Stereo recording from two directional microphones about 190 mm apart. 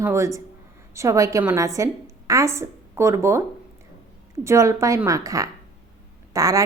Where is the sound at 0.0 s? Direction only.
15° right (ahead or behind).